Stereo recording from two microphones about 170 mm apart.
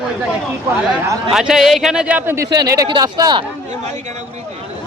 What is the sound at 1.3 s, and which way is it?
A man's voice, 5° right (ahead or behind).